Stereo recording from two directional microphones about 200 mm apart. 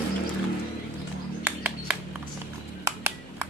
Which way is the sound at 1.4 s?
10° right (ahead or behind).